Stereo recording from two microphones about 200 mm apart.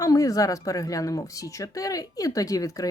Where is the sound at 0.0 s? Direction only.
15° left (ahead or behind).